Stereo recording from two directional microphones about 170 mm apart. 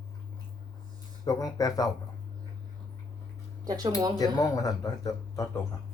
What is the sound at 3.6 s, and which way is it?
Speech, 20° right (ahead or behind).